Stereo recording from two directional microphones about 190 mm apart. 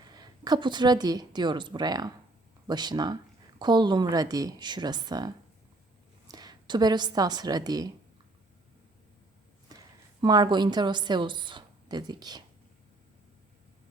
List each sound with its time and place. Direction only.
0.1 s a woman's voice: 20° right (ahead or behind)
10.2 s a woman's voice: 25° right (ahead or behind)